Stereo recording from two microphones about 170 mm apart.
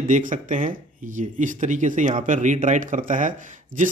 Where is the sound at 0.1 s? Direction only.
50° right (ahead or behind).